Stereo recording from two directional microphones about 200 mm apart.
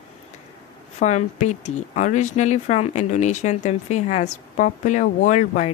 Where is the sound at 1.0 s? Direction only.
35° left (ahead or behind).